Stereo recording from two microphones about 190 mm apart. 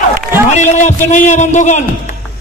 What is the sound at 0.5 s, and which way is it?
A man's voice, 40° left (ahead or behind).